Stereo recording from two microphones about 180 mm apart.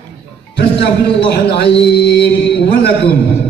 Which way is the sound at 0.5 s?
65° left (ahead or behind).